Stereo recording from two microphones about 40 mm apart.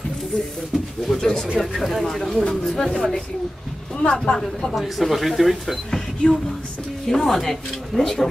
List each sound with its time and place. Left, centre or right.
1.0 s speech: centre
4.7 s speech: centre
5.9 s a sound: centre
7.1 s speech: centre